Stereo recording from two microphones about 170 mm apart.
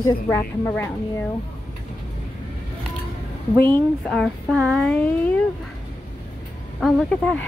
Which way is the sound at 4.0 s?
Centre (ahead or behind).